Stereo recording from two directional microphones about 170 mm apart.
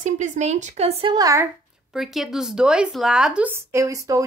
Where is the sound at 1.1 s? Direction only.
20° right (ahead or behind).